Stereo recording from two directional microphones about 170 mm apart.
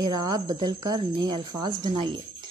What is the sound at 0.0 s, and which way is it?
Speech, 25° right (ahead or behind).